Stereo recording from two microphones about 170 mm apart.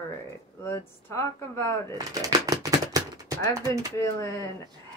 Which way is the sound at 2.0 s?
20° right (ahead or behind).